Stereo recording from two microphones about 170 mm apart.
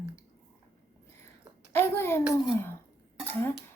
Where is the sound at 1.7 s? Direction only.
15° left (ahead or behind).